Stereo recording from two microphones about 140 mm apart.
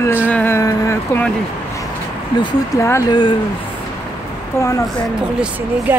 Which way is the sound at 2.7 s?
20° left (ahead or behind).